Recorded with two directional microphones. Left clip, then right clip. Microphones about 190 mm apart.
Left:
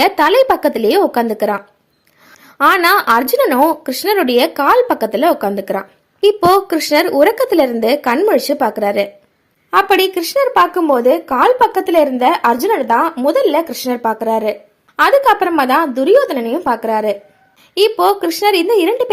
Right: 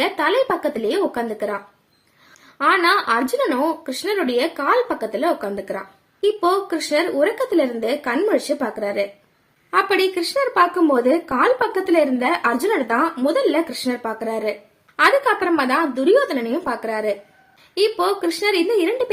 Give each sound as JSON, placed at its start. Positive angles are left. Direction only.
{"t": 0.0, "sound": "a woman's voice", "side_deg": 45}